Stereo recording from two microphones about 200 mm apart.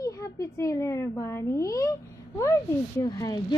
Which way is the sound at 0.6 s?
15° left (ahead or behind).